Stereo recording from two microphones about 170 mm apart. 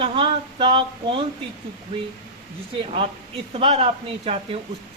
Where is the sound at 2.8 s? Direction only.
35° right (ahead or behind).